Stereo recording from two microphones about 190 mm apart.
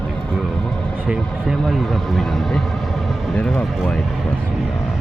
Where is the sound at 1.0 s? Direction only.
10° right (ahead or behind).